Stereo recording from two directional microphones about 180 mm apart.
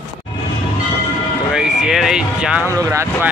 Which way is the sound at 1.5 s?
Centre (ahead or behind).